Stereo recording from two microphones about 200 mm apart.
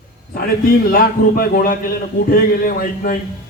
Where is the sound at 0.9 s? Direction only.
45° left (ahead or behind).